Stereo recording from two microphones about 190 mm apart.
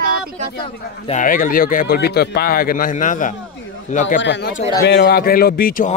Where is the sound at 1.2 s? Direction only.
45° left (ahead or behind).